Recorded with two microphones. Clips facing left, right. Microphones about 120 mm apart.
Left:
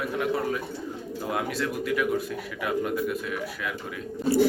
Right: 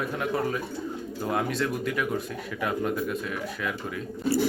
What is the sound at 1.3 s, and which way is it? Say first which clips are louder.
Speech: right 2 dB; centre (ahead or behind).